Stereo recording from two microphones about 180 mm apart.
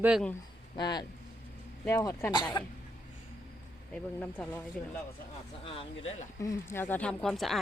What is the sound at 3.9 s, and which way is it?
Speech, 5° left (ahead or behind).